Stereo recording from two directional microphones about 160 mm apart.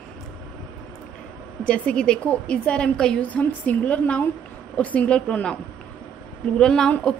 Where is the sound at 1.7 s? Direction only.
5° left (ahead or behind).